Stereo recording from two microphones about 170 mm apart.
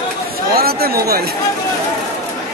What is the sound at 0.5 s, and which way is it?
Speech, 65° right (ahead or behind).